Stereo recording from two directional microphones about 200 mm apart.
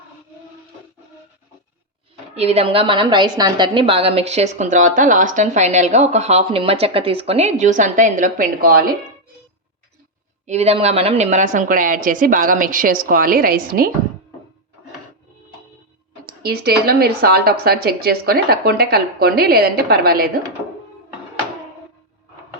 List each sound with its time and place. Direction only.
2.3 s a woman's voice: 30° right (ahead or behind)
10.4 s a woman's voice: 35° right (ahead or behind)
16.2 s speech: 50° right (ahead or behind)